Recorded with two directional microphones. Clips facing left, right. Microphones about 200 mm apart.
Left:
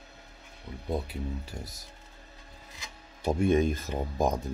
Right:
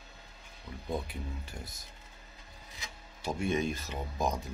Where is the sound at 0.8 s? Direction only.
35° left (ahead or behind).